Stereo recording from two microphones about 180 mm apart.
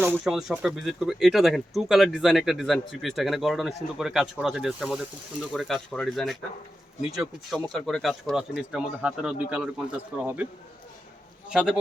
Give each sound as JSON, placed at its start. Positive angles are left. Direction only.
{"t": 0.0, "sound": "speech", "side_deg": -5}
{"t": 11.4, "sound": "speech", "side_deg": -5}